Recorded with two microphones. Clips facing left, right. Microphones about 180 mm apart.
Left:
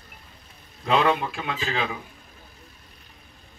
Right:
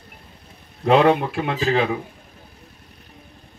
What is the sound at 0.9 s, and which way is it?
A man's voice, 60° right (ahead or behind).